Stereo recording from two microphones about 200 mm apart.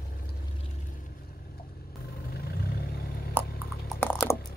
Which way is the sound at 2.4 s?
50° left (ahead or behind).